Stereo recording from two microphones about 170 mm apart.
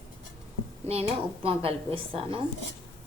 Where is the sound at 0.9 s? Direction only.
35° right (ahead or behind).